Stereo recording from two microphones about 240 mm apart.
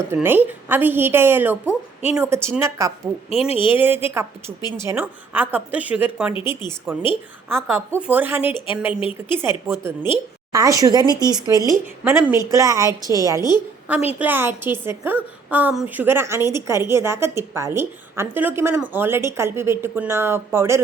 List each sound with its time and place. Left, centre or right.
0.1 s a woman's voice: centre
3.2 s speech: left
3.8 s a woman's voice: centre
6.3 s speech: centre
6.9 s a woman's voice: centre